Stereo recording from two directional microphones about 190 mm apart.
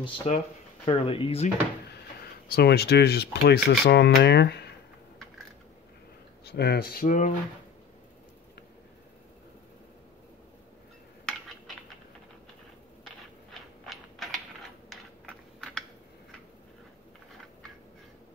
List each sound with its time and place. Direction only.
0.3 s speech: 35° left (ahead or behind)
2.5 s speech: 55° left (ahead or behind)
6.4 s speech: 55° left (ahead or behind); by 7.3 s 40° left (ahead or behind)
11.2 s a sound: centre (ahead or behind)
13.0 s mechanisms: centre (ahead or behind)
14.9 s typing: 5° left (ahead or behind)